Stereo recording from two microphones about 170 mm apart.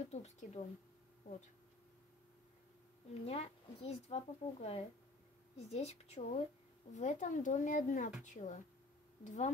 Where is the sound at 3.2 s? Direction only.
35° left (ahead or behind).